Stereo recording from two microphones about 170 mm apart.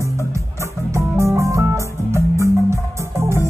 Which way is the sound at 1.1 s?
15° right (ahead or behind).